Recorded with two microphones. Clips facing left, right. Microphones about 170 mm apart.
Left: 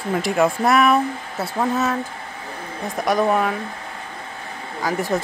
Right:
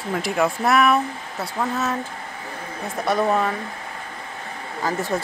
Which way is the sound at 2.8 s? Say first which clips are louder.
Left 2 dB; 15° left (ahead or behind).